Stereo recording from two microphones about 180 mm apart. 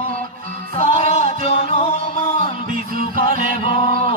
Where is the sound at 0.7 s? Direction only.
35° left (ahead or behind).